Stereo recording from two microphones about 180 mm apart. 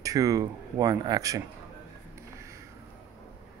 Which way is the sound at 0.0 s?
20° right (ahead or behind).